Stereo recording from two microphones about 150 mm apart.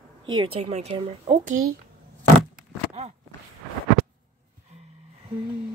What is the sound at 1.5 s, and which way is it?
Speech, 70° right (ahead or behind).